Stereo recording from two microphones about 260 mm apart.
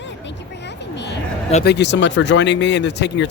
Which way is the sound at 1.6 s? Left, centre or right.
Left.